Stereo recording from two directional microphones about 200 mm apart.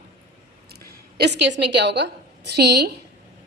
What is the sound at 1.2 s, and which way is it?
A woman's voice, 60° right (ahead or behind).